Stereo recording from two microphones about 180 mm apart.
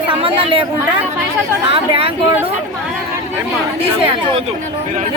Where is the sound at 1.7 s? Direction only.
30° right (ahead or behind).